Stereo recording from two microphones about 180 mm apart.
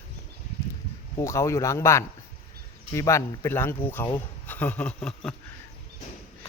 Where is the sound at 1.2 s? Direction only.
15° left (ahead or behind).